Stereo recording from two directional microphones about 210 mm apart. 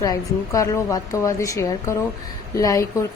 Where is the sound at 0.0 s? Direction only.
15° left (ahead or behind).